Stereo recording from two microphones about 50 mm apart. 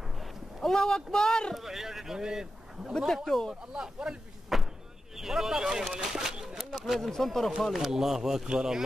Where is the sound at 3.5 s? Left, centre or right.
Centre.